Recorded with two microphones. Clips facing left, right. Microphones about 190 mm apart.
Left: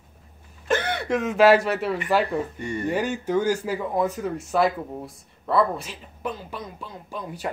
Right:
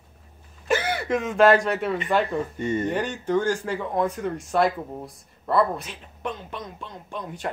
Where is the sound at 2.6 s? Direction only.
20° right (ahead or behind).